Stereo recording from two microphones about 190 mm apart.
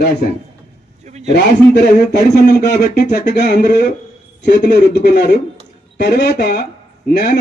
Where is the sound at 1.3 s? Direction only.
60° left (ahead or behind).